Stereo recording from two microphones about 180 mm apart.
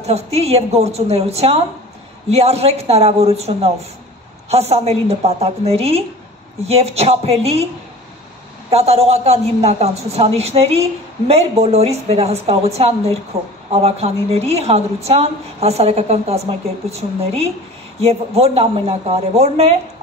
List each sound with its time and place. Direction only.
0.0 s a man's voice: 35° right (ahead or behind)
8.6 s a man's voice: 35° right (ahead or behind)
18.0 s a man's voice: 35° right (ahead or behind)